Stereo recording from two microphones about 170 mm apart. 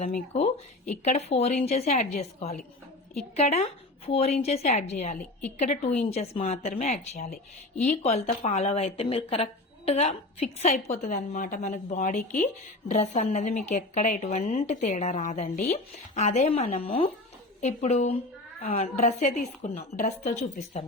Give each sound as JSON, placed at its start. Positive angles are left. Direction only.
{"t": 0.3, "sound": "a woman's voice", "side_deg": 40}
{"t": 5.1, "sound": "a woman's voice", "side_deg": 10}
{"t": 5.5, "sound": "a woman's voice", "side_deg": 45}